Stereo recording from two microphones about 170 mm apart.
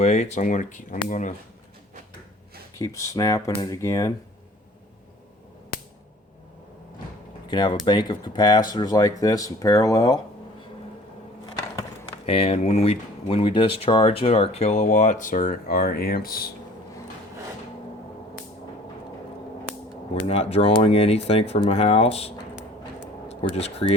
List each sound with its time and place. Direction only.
0.0 s speech: 40° left (ahead or behind)
2.7 s speech: 20° left (ahead or behind)
7.4 s speech: 25° left (ahead or behind)
12.2 s speech: 35° left (ahead or behind); by 16.5 s 60° left (ahead or behind)
20.1 s speech: 35° left (ahead or behind)
23.4 s speech: 35° left (ahead or behind)